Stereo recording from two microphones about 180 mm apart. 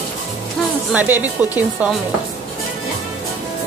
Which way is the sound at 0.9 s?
10° right (ahead or behind).